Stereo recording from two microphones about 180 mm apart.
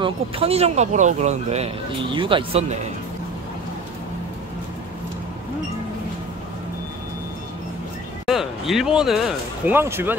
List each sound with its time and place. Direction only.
0.0 s speech: 35° right (ahead or behind)
8.3 s a sound: centre (ahead or behind)
9.7 s speech: 10° right (ahead or behind)